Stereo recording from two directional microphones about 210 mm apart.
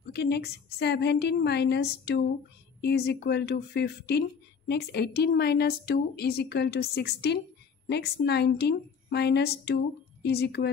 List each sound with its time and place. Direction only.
0.0 s a woman's voice: 50° left (ahead or behind)